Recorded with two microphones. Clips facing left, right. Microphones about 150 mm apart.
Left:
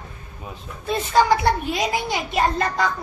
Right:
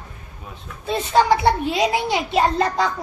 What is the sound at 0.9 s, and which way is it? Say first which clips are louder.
A child's voice: right 1 dB; 25° right (ahead or behind).